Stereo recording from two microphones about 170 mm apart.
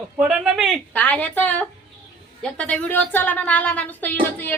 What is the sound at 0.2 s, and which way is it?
A woman's voice, 5° right (ahead or behind).